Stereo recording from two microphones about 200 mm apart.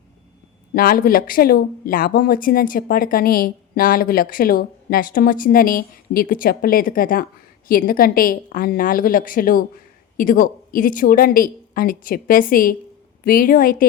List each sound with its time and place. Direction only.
0.7 s speech: 45° left (ahead or behind)